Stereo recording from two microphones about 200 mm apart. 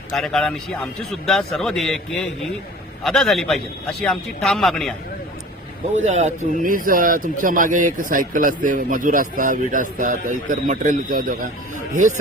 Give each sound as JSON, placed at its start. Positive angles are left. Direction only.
{"t": 0.1, "sound": "a man's voice", "side_deg": 5}
{"t": 5.9, "sound": "speech", "side_deg": -35}